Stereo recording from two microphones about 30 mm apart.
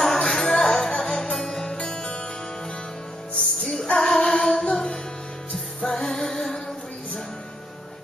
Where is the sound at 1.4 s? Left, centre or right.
Left.